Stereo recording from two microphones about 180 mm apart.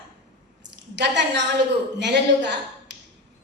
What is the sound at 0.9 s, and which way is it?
A woman's voice, 75° right (ahead or behind).